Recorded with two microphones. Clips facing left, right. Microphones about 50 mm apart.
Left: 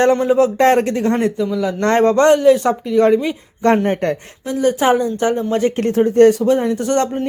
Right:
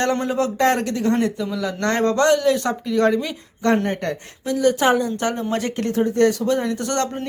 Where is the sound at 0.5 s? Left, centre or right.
Left.